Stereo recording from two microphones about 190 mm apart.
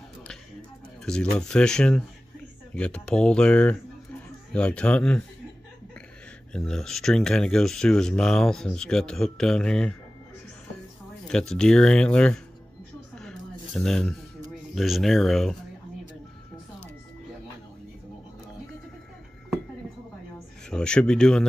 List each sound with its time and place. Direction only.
1.0 s speech: 5° left (ahead or behind)
6.5 s speech: 5° left (ahead or behind)
11.2 s speech: 5° left (ahead or behind)
13.1 s a sound: 5° left (ahead or behind)
14.5 s speech: centre (ahead or behind)
20.7 s speech: 5° left (ahead or behind)